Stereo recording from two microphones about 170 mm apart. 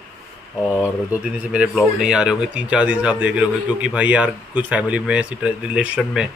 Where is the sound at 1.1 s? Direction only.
10° right (ahead or behind).